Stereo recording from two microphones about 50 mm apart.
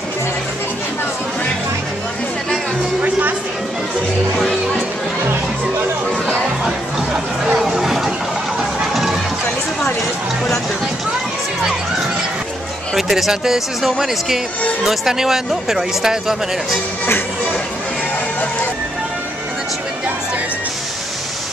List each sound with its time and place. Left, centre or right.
3.0 s music: right
7.5 s chatter: centre
8.5 s music: centre
12.9 s speech: centre